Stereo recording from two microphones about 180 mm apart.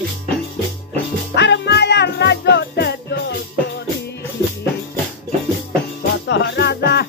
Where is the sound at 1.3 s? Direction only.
70° left (ahead or behind).